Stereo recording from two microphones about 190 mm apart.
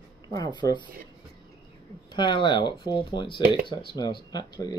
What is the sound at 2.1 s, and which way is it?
Speech, 25° left (ahead or behind).